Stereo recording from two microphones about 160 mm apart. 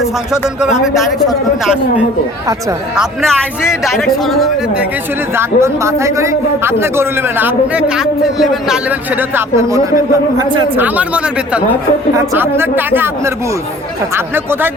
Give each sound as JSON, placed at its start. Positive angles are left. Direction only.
{"t": 0.6, "sound": "a man's voice", "side_deg": 0}
{"t": 5.4, "sound": "a man's voice", "side_deg": -15}
{"t": 10.8, "sound": "a man's voice", "side_deg": -10}